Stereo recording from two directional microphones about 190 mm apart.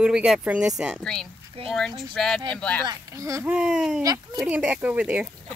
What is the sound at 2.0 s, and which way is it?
Speech, centre (ahead or behind).